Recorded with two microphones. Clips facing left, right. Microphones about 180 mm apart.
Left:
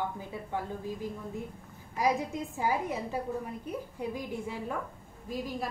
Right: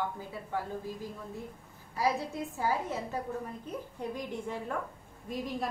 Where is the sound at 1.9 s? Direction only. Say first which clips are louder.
Left 2 dB; 15° left (ahead or behind).